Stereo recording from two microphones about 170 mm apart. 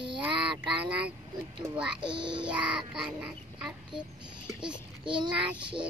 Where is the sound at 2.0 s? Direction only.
30° right (ahead or behind).